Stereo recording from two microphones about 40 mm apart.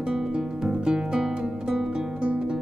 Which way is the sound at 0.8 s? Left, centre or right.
Right.